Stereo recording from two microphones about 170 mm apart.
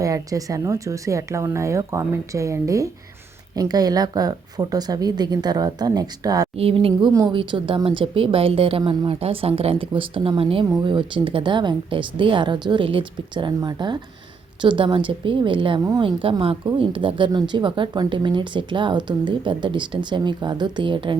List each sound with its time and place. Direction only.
0.0 s speech: 20° right (ahead or behind)
6.6 s a woman's voice: 35° right (ahead or behind)
7.1 s a woman's voice: 20° right (ahead or behind)